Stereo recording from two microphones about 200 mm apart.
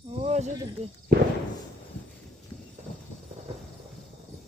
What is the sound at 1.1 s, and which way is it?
Speech, 55° right (ahead or behind).